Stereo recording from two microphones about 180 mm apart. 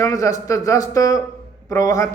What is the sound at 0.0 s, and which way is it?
A man's voice, 20° left (ahead or behind).